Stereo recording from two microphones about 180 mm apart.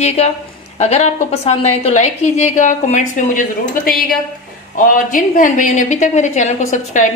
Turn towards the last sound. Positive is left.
turn(degrees=45)  # may be behind; listen again after turning